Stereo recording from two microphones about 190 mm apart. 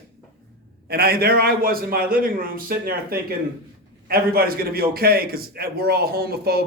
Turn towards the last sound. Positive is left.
turn(degrees=-55)  # may be behind; listen again after turning